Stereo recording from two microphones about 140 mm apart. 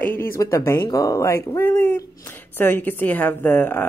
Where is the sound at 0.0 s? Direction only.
15° left (ahead or behind).